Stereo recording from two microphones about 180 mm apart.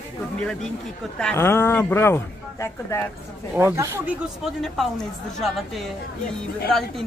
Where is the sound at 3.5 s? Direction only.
15° right (ahead or behind).